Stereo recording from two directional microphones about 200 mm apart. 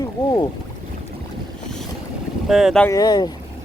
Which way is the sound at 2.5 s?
Centre (ahead or behind).